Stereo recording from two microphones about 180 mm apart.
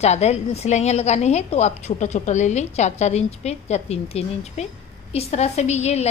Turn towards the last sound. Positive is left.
turn(degrees=35)  # may be behind; listen again after turning